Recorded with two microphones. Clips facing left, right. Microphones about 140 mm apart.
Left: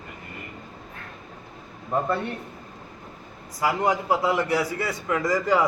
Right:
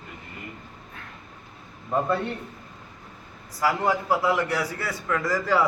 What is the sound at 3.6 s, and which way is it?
A man's voice, 15° left (ahead or behind).